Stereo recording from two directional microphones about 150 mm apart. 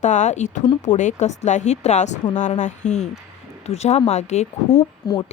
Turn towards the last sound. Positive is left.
turn(degrees=25)  # may be behind; listen again after turning